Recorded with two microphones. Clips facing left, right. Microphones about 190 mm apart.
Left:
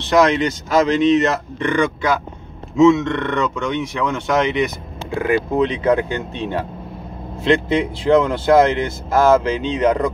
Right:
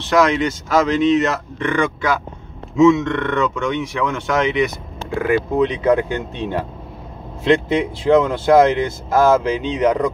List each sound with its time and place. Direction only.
0.1 s speech: 5° right (ahead or behind)
7.4 s speech: 15° right (ahead or behind)